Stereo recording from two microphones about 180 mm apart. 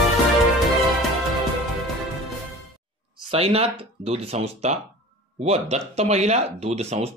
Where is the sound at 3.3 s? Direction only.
35° right (ahead or behind).